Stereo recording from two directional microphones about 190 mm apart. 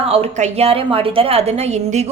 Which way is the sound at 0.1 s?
35° right (ahead or behind).